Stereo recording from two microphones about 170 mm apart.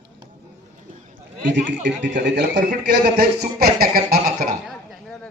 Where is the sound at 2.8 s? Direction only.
75° right (ahead or behind).